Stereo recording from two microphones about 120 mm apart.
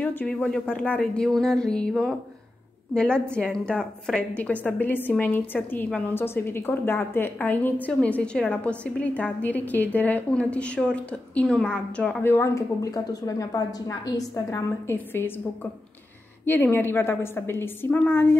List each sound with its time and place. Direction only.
0.0 s a woman's voice: 15° left (ahead or behind)
12.2 s a woman's voice: 20° left (ahead or behind)
14.9 s a woman's voice: 20° left (ahead or behind)
16.4 s a woman's voice: 15° left (ahead or behind)